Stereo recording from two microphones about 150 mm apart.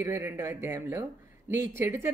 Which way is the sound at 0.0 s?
15° right (ahead or behind).